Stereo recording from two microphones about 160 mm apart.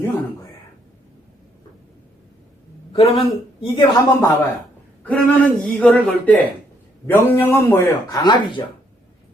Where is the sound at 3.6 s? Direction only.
30° left (ahead or behind).